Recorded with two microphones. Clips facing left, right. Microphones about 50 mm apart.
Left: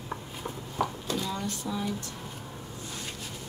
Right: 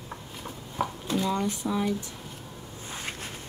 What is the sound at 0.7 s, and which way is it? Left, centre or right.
Speech, centre.